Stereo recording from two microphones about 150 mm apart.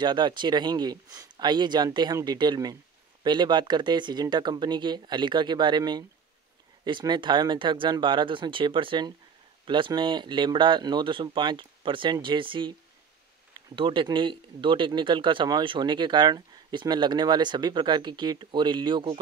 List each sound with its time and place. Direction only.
0.0 s speech: 30° right (ahead or behind)
13.7 s speech: 35° right (ahead or behind)